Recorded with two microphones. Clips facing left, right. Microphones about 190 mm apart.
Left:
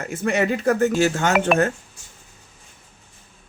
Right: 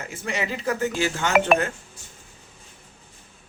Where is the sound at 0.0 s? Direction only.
55° left (ahead or behind).